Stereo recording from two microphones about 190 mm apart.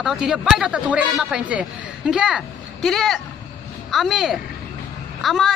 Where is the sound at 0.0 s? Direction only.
Centre (ahead or behind).